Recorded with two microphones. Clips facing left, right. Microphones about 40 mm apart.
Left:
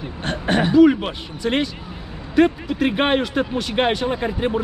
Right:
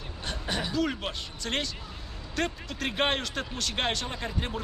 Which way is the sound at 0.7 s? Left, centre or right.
Centre.